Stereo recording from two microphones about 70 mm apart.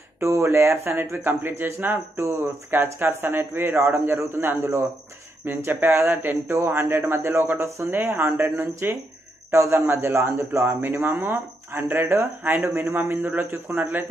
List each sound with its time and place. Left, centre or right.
0.2 s speech: right